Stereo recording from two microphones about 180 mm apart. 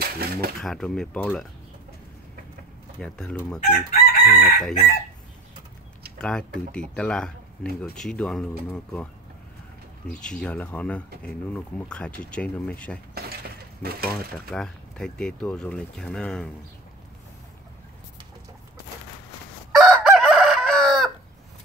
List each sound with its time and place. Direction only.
0.0 s a sound: 60° right (ahead or behind)
0.6 s speech: centre (ahead or behind)
3.0 s speech: 5° left (ahead or behind)
3.6 s chicken: 55° left (ahead or behind)
4.6 s speech: centre (ahead or behind)
6.1 s speech: 5° left (ahead or behind)
13.1 s a sound: 60° right (ahead or behind)
14.5 s speech: 5° left (ahead or behind)
19.7 s chicken: centre (ahead or behind)